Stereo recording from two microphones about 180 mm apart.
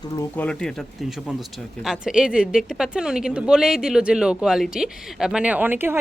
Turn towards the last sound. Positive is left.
turn(degrees=-10)  # may be behind; listen again after turning